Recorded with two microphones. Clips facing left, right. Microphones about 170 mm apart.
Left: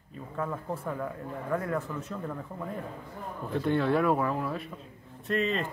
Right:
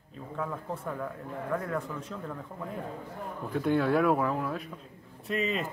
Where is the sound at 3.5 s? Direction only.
5° right (ahead or behind).